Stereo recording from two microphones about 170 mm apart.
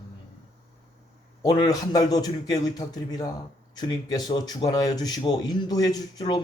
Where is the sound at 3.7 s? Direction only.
25° left (ahead or behind).